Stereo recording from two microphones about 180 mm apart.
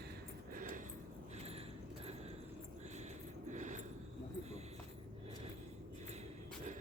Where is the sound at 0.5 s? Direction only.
50° right (ahead or behind).